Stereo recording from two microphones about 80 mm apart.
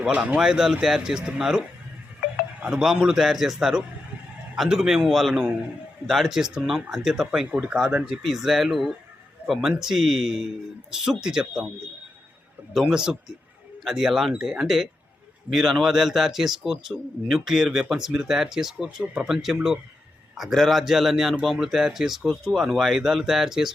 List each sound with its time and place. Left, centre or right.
0.1 s speech: centre
0.3 s speech: centre
2.6 s a man's voice: centre
8.2 s a man's voice: centre
12.8 s a man's voice: centre